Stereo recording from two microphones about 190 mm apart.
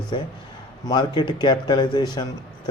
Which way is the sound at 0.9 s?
25° left (ahead or behind).